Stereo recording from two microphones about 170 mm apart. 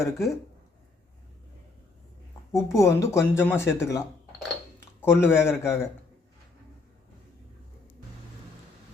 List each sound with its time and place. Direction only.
0.0 s speech: 20° left (ahead or behind)
2.5 s speech: 15° left (ahead or behind)